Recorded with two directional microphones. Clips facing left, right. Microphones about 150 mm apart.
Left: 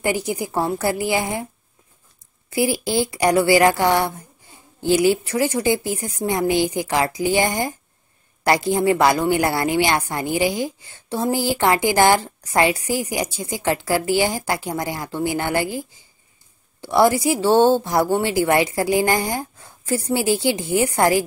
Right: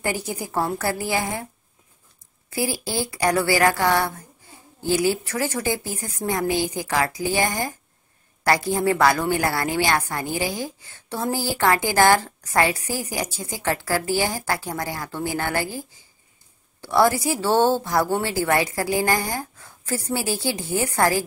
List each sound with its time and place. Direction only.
0.0 s a woman's voice: 15° left (ahead or behind)
2.5 s a woman's voice: 20° left (ahead or behind)
16.8 s a woman's voice: 15° left (ahead or behind)